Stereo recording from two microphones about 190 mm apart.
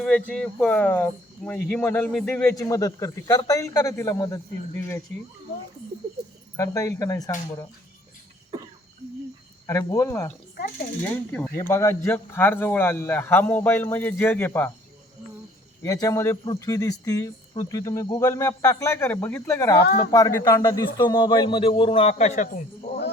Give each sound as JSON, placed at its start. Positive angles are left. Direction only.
{"t": 0.0, "sound": "speech", "side_deg": 5}
{"t": 6.6, "sound": "speech", "side_deg": 15}
{"t": 9.6, "sound": "speech", "side_deg": 15}
{"t": 15.8, "sound": "speech", "side_deg": 20}
{"t": 19.8, "sound": "speech", "side_deg": 60}
{"t": 20.1, "sound": "a man's voice", "side_deg": 20}